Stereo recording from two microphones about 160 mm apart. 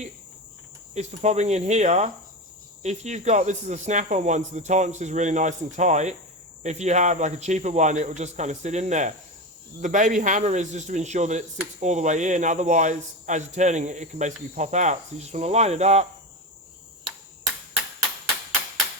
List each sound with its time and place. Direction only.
0.9 s a man's voice: 45° right (ahead or behind)